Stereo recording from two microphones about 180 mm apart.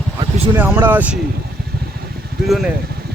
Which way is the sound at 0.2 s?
30° right (ahead or behind).